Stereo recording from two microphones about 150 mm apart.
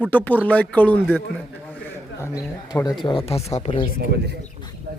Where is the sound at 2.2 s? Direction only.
25° left (ahead or behind).